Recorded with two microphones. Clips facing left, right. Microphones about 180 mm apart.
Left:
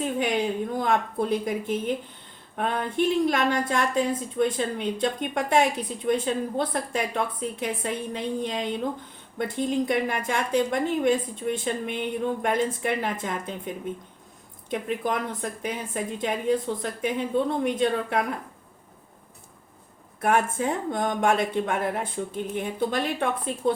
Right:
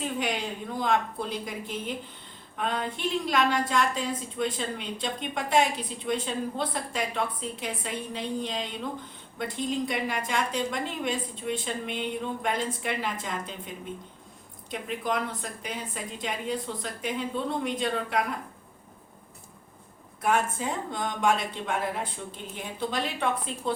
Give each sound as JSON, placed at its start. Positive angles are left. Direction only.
{"t": 0.0, "sound": "a woman's voice", "side_deg": 50}
{"t": 14.7, "sound": "a woman's voice", "side_deg": 50}
{"t": 20.2, "sound": "a woman's voice", "side_deg": 55}